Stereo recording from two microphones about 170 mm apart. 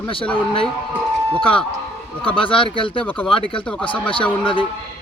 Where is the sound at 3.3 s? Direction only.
30° left (ahead or behind).